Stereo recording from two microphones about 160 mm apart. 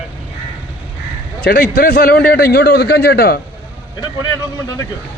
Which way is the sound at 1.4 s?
70° left (ahead or behind).